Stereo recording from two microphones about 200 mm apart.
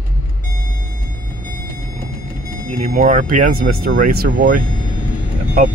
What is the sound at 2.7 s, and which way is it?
Speech, 40° right (ahead or behind).